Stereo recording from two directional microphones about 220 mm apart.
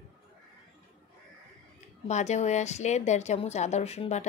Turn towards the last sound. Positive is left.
turn(degrees=30)  # may be behind; listen again after turning